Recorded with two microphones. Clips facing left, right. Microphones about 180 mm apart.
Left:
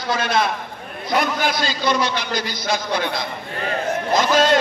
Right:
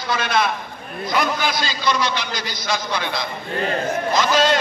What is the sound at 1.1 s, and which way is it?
A man's voice, 50° left (ahead or behind).